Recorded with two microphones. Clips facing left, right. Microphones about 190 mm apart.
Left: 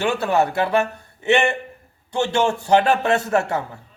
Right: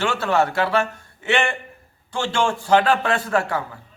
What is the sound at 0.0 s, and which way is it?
A man's voice, 15° left (ahead or behind).